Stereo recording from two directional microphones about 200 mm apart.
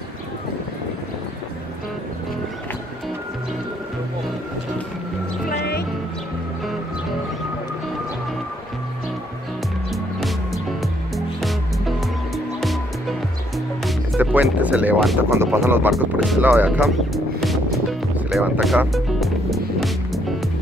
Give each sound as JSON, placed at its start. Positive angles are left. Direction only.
{"t": 5.5, "sound": "music", "side_deg": 55}
{"t": 9.9, "sound": "music", "side_deg": 0}
{"t": 13.8, "sound": "speech", "side_deg": 0}
{"t": 15.9, "sound": "music", "side_deg": 0}